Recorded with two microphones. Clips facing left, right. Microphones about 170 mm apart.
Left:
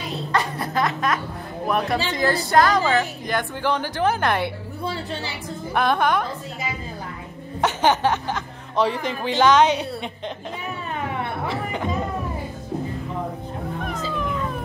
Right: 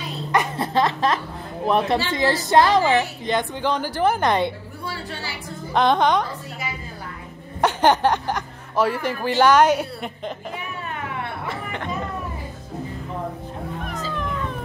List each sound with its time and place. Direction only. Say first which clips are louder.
0.3 s music: right 3 dB; 20° right (ahead or behind)
1.7 s speech: right 3 dB; 25° right (ahead or behind)
5.9 s speech: right 2 dB; 20° right (ahead or behind)
7.6 s a woman's voice: right 2 dB; 15° right (ahead or behind)
11.4 s speech: left 4 dB; 5° left (ahead or behind)